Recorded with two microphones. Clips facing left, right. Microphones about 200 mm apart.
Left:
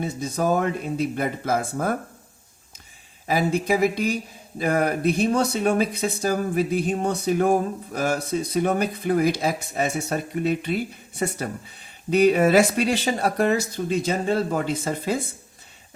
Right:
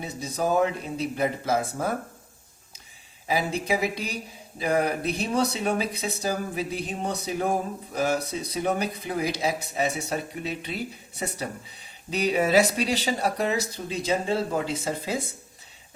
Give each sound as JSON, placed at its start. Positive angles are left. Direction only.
{"t": 0.0, "sound": "speech", "side_deg": 50}
{"t": 3.2, "sound": "speech", "side_deg": 50}
{"t": 12.1, "sound": "speech", "side_deg": 50}